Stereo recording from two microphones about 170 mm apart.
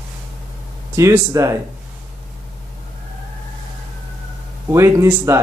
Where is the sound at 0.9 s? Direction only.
15° right (ahead or behind).